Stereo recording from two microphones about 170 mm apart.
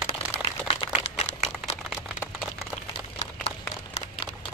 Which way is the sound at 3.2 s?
40° left (ahead or behind).